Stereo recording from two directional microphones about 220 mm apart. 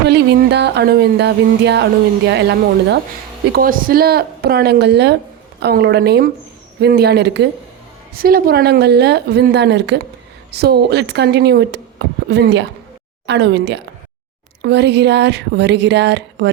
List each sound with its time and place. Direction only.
0.1 s speech: 50° right (ahead or behind)